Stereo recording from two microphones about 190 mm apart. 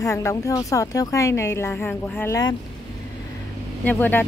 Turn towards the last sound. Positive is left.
turn(degrees=10)  # may be behind; listen again after turning